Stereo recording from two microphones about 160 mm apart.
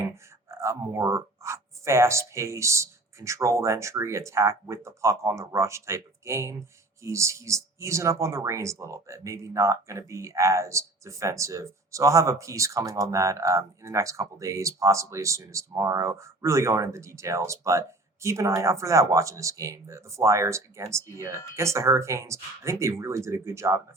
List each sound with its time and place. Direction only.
0.6 s speech: 15° right (ahead or behind)